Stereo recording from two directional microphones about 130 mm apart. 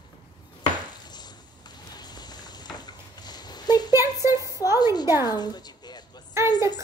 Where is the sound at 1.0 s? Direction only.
35° left (ahead or behind).